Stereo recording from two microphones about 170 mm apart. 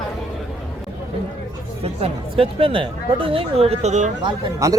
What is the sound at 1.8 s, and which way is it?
Speech, 35° right (ahead or behind).